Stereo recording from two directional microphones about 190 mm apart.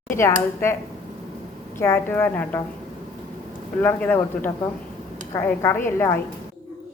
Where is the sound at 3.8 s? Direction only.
10° left (ahead or behind).